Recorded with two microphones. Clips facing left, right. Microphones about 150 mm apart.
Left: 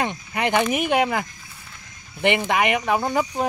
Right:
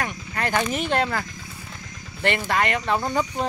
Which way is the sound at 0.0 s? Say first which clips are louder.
Left 4 dB; 20° left (ahead or behind).